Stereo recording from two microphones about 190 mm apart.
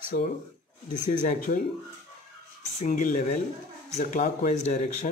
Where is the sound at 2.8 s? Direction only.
45° left (ahead or behind).